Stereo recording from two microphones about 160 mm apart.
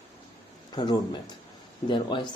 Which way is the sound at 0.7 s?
25° left (ahead or behind).